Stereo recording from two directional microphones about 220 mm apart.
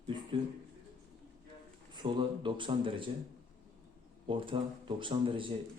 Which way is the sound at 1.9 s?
20° right (ahead or behind).